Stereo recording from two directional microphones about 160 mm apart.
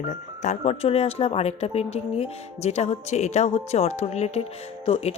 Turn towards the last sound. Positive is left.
turn(degrees=40)  # may be behind; listen again after turning